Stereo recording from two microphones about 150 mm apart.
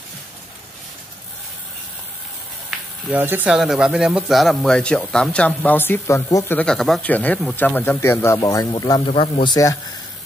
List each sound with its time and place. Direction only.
3.1 s speech: 15° right (ahead or behind)
3.5 s a man's voice: centre (ahead or behind); by 9.8 s 25° left (ahead or behind)